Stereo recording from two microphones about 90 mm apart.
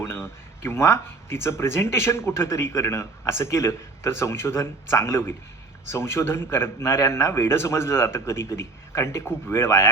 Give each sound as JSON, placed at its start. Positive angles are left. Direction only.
{"t": 0.0, "sound": "speech", "side_deg": 25}